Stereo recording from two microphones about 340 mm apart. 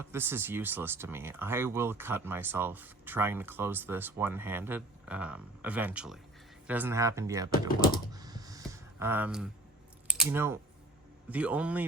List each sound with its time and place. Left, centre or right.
0.0 s speech: centre
7.8 s typing: left
8.1 s a sound: centre
10.1 s a man's voice: centre